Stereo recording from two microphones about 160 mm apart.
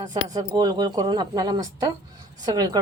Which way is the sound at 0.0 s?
25° right (ahead or behind).